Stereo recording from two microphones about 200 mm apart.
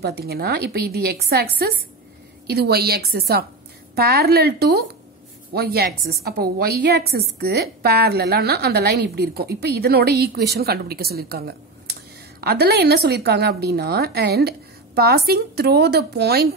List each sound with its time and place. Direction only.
0.0 s a woman's voice: 50° right (ahead or behind)